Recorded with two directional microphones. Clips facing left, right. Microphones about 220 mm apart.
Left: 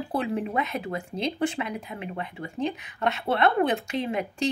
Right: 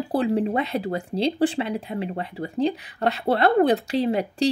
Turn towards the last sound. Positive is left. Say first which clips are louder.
# right 6 dB
turn(degrees=-35)  # may be behind; listen again after turning